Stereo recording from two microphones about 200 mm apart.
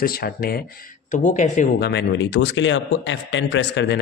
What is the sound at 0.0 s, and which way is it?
Speech, 50° left (ahead or behind).